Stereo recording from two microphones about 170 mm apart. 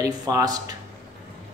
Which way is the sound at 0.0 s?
20° right (ahead or behind).